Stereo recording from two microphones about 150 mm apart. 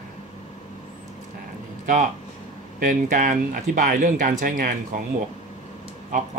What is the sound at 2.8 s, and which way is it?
Speech, 60° right (ahead or behind).